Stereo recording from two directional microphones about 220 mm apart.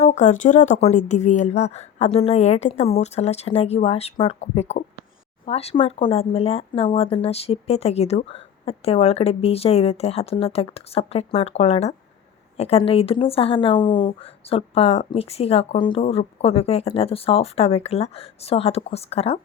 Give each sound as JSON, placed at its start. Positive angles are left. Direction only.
{"t": 0.0, "sound": "speech", "side_deg": 35}